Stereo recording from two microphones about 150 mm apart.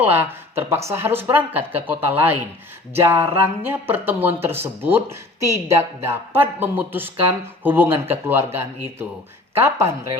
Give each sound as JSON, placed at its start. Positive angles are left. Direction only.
{"t": 0.0, "sound": "speech", "side_deg": -10}